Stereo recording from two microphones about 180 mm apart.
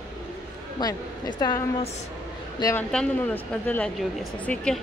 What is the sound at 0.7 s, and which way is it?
Speech, 20° left (ahead or behind).